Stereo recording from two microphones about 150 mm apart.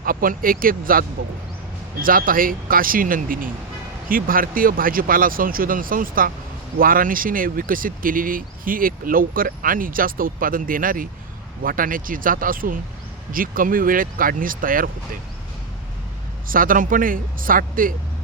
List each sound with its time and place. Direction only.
0.0 s speech: 70° right (ahead or behind)
16.5 s speech: 70° right (ahead or behind)